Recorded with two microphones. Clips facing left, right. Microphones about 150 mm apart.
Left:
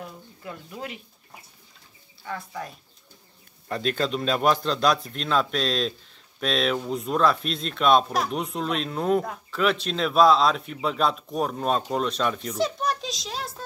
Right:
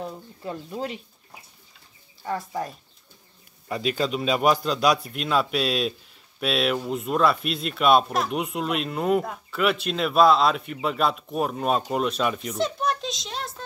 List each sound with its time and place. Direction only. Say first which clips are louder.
0.0 s a sound: right 5 dB; 30° right (ahead or behind)
2.2 s speech: right 5 dB; 40° right (ahead or behind)
3.6 s a man's voice: right 1 dB; 5° right (ahead or behind)